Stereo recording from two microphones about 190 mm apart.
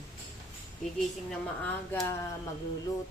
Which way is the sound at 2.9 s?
15° left (ahead or behind).